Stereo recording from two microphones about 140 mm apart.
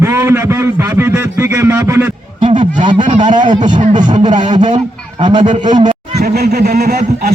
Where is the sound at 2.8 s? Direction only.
35° right (ahead or behind).